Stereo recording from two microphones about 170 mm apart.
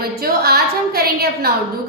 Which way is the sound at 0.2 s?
65° right (ahead or behind).